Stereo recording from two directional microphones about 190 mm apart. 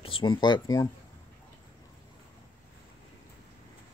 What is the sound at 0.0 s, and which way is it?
Speech, 25° left (ahead or behind).